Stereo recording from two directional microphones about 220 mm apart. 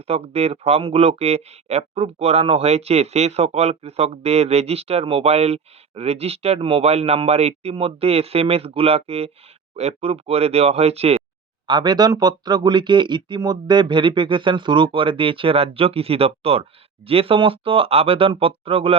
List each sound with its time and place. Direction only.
0.1 s speech: 30° right (ahead or behind)